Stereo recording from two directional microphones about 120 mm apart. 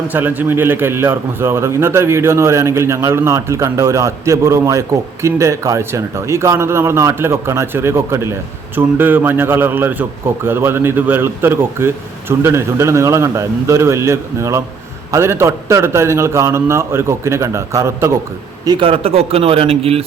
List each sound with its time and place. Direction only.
0.1 s a man's voice: 15° right (ahead or behind)
18.8 s a man's voice: 55° right (ahead or behind)